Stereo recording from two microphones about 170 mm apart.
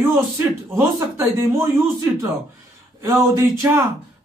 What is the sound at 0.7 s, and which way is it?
Speech, 15° right (ahead or behind).